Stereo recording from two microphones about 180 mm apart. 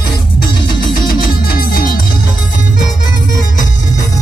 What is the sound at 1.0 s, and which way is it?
Music, 55° left (ahead or behind).